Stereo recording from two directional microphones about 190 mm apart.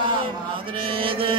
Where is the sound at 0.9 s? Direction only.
30° right (ahead or behind).